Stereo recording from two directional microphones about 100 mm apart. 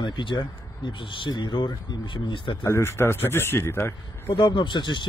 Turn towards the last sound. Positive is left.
turn(degrees=50)  # may be behind; listen again after turning